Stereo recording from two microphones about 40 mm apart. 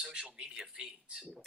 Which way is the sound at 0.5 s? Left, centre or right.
Centre.